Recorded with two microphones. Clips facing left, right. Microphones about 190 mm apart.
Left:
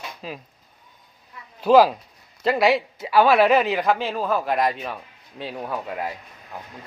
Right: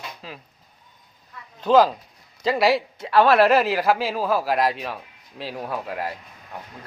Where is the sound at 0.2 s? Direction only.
15° left (ahead or behind).